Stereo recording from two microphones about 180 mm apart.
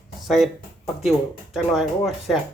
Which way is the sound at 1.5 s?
Centre (ahead or behind).